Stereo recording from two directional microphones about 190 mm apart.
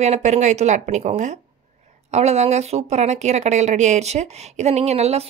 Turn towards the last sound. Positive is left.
turn(degrees=-35)  # may be behind; listen again after turning